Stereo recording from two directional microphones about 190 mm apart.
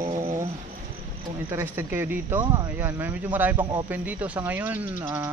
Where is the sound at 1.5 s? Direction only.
10° right (ahead or behind).